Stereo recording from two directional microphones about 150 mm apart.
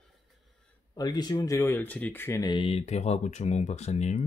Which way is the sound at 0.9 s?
25° left (ahead or behind).